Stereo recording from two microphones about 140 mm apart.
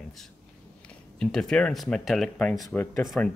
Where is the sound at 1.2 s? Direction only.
5° left (ahead or behind).